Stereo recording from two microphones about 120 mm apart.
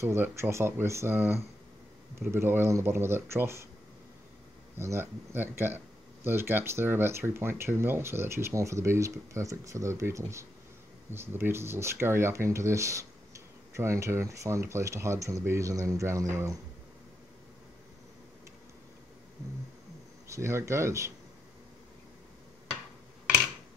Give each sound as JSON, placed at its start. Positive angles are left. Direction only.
{"t": 0.0, "sound": "speech", "side_deg": -20}
{"t": 4.7, "sound": "speech", "side_deg": -20}
{"t": 20.2, "sound": "speech", "side_deg": -25}